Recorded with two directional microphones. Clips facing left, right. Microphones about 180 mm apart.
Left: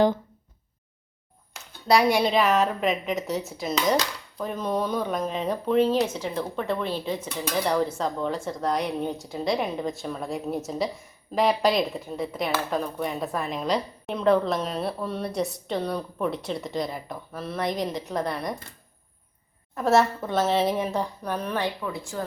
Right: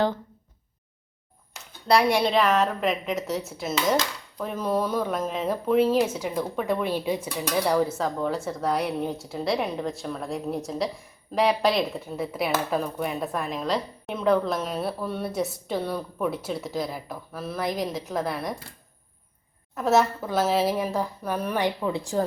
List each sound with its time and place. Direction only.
1.9 s speech: centre (ahead or behind)
19.7 s speech: centre (ahead or behind)
21.8 s a woman's voice: 25° right (ahead or behind)